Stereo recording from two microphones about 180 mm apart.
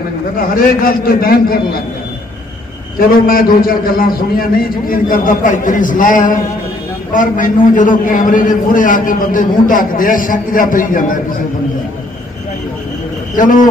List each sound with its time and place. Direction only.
0.6 s a man's voice: 55° left (ahead or behind)
3.0 s a man's voice: 55° left (ahead or behind)
13.4 s a man's voice: 45° left (ahead or behind)